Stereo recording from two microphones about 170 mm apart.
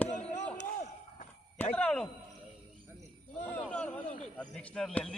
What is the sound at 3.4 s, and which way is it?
Speech, 5° left (ahead or behind).